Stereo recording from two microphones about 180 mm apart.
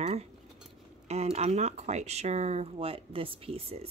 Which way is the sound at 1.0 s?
35° right (ahead or behind).